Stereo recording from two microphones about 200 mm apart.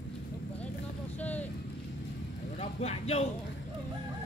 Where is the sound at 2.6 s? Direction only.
30° left (ahead or behind).